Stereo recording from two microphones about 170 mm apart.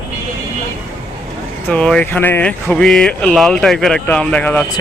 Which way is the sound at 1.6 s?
5° left (ahead or behind).